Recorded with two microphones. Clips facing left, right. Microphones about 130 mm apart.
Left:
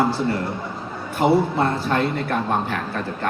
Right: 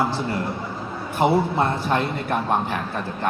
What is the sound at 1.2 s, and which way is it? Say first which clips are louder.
A man's voice: left 1 dB; 15° right (ahead or behind).